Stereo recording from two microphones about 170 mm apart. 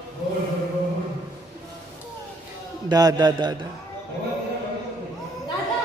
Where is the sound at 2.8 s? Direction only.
25° right (ahead or behind).